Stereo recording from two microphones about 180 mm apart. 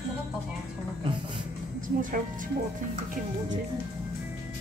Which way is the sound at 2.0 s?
50° right (ahead or behind).